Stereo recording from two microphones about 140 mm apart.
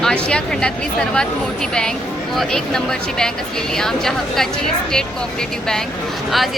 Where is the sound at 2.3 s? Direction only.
5° left (ahead or behind).